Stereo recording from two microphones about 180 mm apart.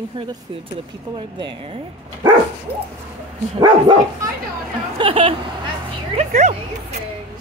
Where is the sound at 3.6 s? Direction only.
25° right (ahead or behind).